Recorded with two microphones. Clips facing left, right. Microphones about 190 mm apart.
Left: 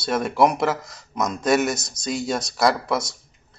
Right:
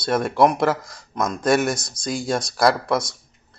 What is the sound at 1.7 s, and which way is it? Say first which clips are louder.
Speech: right 1 dB; 25° left (ahead or behind).